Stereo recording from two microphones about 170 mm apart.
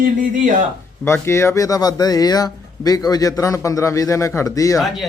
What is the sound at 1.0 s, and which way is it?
A man's voice, 15° left (ahead or behind).